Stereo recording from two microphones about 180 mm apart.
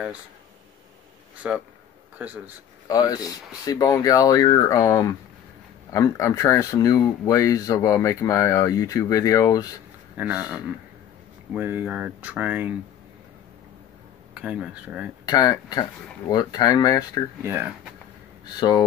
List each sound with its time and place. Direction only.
1.4 s speech: 5° right (ahead or behind)
2.9 s speech: 20° left (ahead or behind)
10.1 s speech: 10° right (ahead or behind)
14.3 s speech: 5° right (ahead or behind)
15.2 s speech: 20° left (ahead or behind)
17.4 s speech: 15° right (ahead or behind)
18.4 s speech: 20° left (ahead or behind)